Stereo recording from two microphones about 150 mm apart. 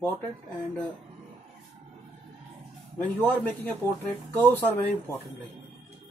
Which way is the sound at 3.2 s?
10° left (ahead or behind).